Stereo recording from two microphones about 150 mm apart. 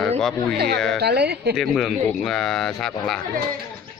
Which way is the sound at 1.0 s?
90° right.